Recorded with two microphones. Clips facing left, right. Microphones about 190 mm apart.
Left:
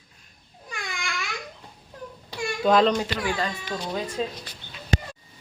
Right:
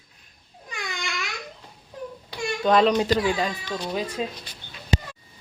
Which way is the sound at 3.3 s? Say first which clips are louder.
Right 3 dB; 15° right (ahead or behind).